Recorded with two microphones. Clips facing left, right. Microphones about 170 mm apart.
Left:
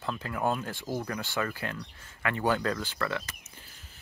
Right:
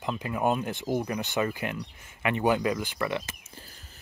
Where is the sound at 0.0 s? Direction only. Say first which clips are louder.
Right 3 dB; 15° right (ahead or behind).